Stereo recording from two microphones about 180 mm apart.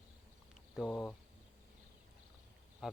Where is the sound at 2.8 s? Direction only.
Centre (ahead or behind).